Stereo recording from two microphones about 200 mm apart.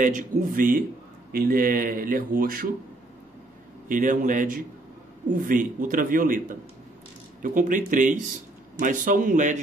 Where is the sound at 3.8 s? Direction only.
40° right (ahead or behind).